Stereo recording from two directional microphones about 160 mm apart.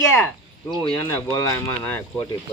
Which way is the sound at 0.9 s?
25° left (ahead or behind).